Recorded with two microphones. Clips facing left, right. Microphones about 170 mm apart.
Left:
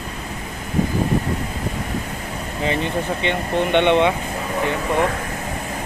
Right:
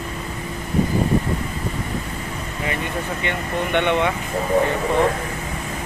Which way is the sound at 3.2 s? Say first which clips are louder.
Left 5 dB; 20° left (ahead or behind).